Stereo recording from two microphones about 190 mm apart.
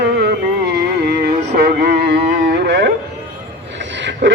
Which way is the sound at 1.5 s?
60° right (ahead or behind).